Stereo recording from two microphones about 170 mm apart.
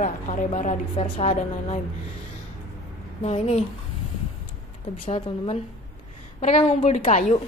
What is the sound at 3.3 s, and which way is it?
Speech, 40° left (ahead or behind).